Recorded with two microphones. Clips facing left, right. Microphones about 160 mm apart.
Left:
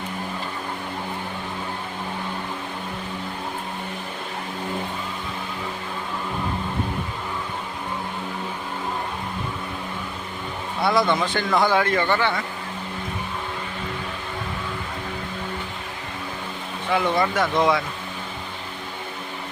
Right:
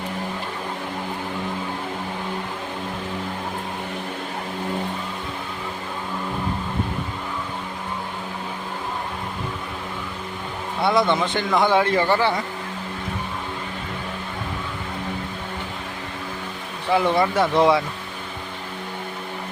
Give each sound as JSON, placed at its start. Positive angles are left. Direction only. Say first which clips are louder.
{"t": 10.8, "sound": "speech", "louder": "right 1 dB", "side_deg": -25}
{"t": 16.9, "sound": "speech", "louder": "right 2 dB", "side_deg": -30}